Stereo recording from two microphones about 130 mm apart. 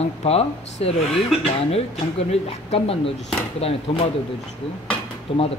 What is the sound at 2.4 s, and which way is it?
Speech, 50° left (ahead or behind).